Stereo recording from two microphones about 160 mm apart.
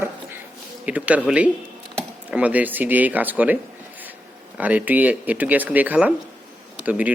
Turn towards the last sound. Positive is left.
turn(degrees=-10)  # may be behind; listen again after turning